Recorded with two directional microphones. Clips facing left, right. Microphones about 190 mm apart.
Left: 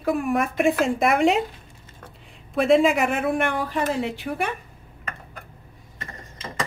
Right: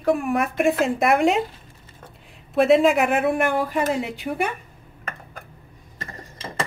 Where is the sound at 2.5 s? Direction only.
Centre (ahead or behind).